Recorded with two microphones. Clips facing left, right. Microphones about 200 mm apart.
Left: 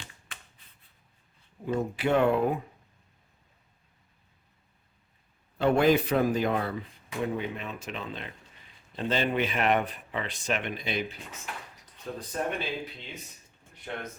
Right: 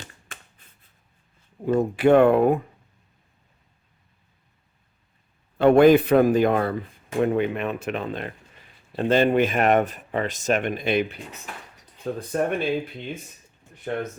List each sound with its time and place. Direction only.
0.3 s a sound: 50° right (ahead or behind)
1.6 s speech: 55° right (ahead or behind)
5.5 s speech: 60° right (ahead or behind)